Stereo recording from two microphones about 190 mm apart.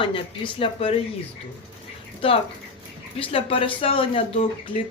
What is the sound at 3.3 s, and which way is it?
Speech, 30° left (ahead or behind).